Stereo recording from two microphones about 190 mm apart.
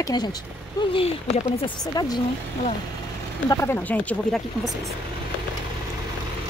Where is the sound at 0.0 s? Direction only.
20° left (ahead or behind).